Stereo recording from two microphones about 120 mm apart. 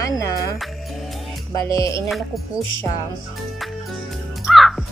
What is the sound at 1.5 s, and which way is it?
Speech, 25° left (ahead or behind).